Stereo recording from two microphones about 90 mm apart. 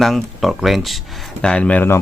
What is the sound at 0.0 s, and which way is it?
Speech, centre (ahead or behind).